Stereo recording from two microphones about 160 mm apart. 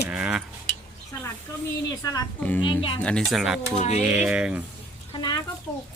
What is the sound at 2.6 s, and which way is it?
Speech, 35° left (ahead or behind).